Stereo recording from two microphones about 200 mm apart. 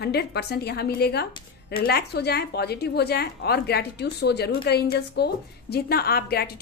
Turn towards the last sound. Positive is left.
turn(degrees=50)  # may be behind; listen again after turning